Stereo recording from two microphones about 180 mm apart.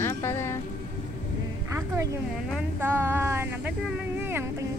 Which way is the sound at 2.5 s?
10° right (ahead or behind).